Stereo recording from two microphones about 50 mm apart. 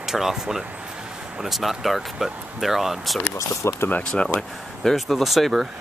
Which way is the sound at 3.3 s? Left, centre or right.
Left.